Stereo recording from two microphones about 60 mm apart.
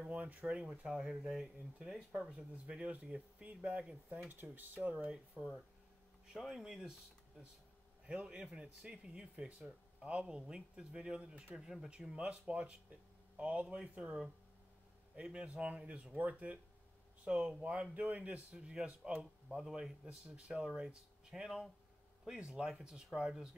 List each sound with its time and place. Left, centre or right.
0.0 s speech: right
0.7 s speech: centre
2.5 s speech: right
5.1 s speech: centre
8.1 s speech: centre
17.2 s speech: centre
18.5 s speech: centre